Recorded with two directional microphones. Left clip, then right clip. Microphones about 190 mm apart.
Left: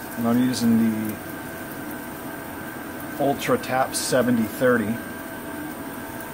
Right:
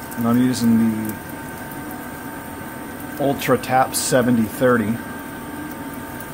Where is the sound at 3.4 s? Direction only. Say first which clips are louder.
Right 5 dB; 15° right (ahead or behind).